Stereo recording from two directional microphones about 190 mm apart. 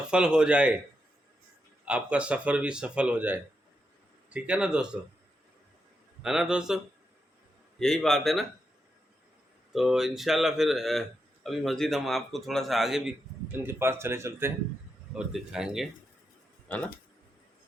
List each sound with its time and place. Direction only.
0.1 s a man's voice: 5° right (ahead or behind)
1.8 s a man's voice: 5° right (ahead or behind)
6.2 s a man's voice: centre (ahead or behind)
7.8 s a man's voice: centre (ahead or behind)
9.7 s a man's voice: centre (ahead or behind)
16.6 s speech: 10° left (ahead or behind)